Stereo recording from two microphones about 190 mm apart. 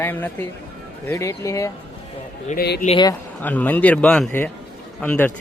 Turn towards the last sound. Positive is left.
turn(degrees=10)  # may be behind; listen again after turning